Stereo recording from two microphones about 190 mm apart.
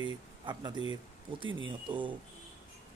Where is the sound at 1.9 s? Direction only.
25° right (ahead or behind).